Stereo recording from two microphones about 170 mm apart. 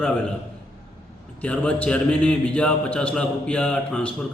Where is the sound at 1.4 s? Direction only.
10° left (ahead or behind).